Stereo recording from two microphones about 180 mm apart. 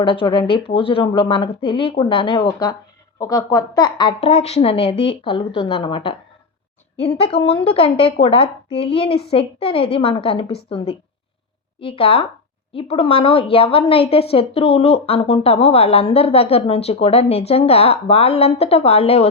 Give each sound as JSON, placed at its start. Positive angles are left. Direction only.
{"t": 0.0, "sound": "a woman's voice", "side_deg": 30}